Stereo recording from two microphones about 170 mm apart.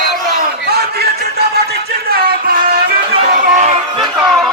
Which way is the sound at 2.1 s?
60° right (ahead or behind).